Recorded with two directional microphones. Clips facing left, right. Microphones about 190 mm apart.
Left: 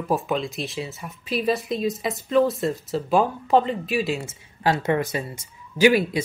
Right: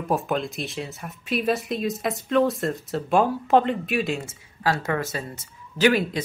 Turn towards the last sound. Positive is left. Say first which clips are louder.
# left 3 dB
turn(degrees=10)  # may be behind; listen again after turning